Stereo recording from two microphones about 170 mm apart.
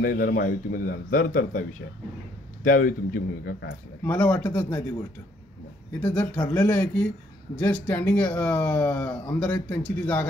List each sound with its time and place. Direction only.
0.0 s a man's voice: 60° left (ahead or behind)
2.6 s a man's voice: 55° left (ahead or behind)
4.0 s speech: 10° left (ahead or behind)
6.0 s speech: 10° left (ahead or behind)